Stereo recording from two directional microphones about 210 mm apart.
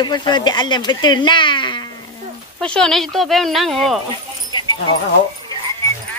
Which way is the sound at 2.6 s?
5° left (ahead or behind).